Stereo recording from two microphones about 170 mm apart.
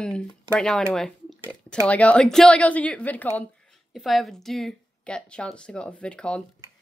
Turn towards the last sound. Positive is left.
turn(degrees=5)  # may be behind; listen again after turning